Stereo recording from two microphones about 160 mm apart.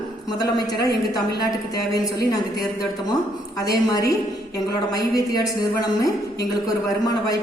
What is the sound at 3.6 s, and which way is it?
A woman's voice, 25° left (ahead or behind).